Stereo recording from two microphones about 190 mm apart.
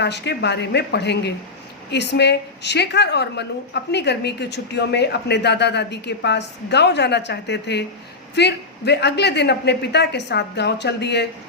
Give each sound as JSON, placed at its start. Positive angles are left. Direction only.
{"t": 0.0, "sound": "a woman's voice", "side_deg": 60}